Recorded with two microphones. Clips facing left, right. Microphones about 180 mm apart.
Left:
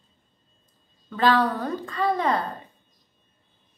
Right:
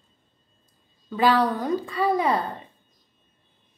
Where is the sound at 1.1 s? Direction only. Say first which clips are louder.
Right 1 dB; 10° right (ahead or behind).